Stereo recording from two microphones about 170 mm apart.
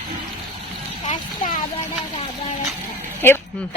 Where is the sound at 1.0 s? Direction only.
50° left (ahead or behind).